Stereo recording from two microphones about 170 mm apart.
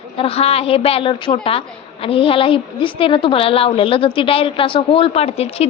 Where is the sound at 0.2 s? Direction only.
35° left (ahead or behind).